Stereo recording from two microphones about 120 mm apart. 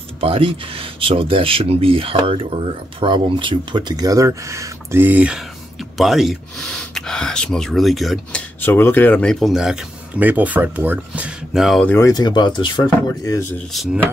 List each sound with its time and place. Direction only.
0.2 s speech: 50° right (ahead or behind); by 8.4 s centre (ahead or behind)
8.4 s speech: 15° left (ahead or behind); by 11.8 s 5° right (ahead or behind)
11.8 s speech: 20° left (ahead or behind)
12.1 s speech: 35° left (ahead or behind)
13.2 s speech: 25° left (ahead or behind)